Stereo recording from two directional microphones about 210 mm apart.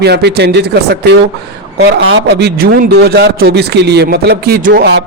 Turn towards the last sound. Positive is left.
turn(degrees=-50)  # may be behind; listen again after turning